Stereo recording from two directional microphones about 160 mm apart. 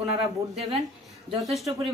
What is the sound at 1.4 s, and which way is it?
Speech, centre (ahead or behind).